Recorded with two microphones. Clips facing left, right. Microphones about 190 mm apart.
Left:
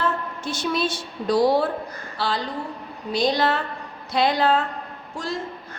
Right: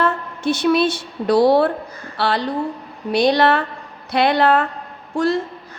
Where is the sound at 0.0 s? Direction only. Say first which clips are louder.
Right 6 dB; 65° right (ahead or behind).